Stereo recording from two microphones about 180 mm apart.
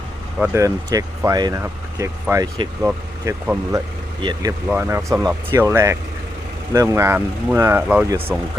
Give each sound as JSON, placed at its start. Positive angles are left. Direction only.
{"t": 0.5, "sound": "speech", "side_deg": -20}